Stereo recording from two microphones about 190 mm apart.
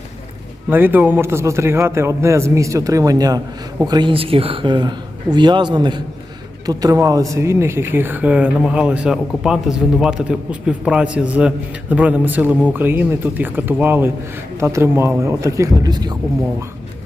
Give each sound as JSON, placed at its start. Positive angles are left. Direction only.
{"t": 0.7, "sound": "speech", "side_deg": -10}